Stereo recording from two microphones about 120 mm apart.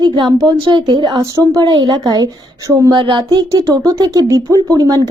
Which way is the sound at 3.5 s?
30° right (ahead or behind).